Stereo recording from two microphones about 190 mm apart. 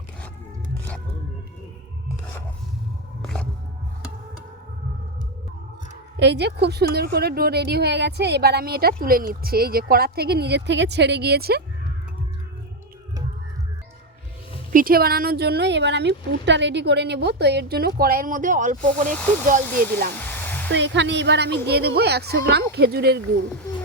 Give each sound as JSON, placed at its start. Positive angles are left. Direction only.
{"t": 3.2, "sound": "music", "side_deg": 5}
{"t": 6.1, "sound": "a woman's voice", "side_deg": -65}
{"t": 14.7, "sound": "a woman's voice", "side_deg": -50}
{"t": 20.1, "sound": "hair dryer", "side_deg": 10}
{"t": 20.7, "sound": "a woman's voice", "side_deg": -70}